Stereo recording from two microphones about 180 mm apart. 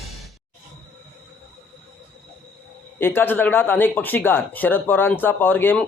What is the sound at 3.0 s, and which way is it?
Speech, 10° left (ahead or behind).